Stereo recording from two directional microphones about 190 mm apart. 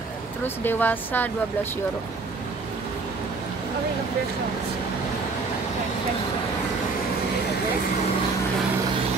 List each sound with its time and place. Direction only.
0.7 s speech: 10° left (ahead or behind)